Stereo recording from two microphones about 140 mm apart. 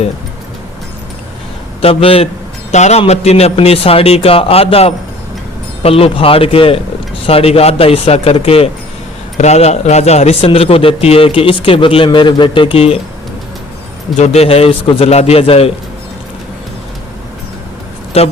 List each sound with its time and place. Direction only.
1.8 s a man's voice: 40° left (ahead or behind)
2.7 s a man's voice: 55° left (ahead or behind)
14.2 s speech: 45° left (ahead or behind)
18.1 s speech: 45° left (ahead or behind)